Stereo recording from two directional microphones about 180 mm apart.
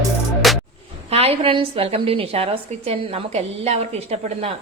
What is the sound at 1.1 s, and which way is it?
A woman's voice, 35° right (ahead or behind).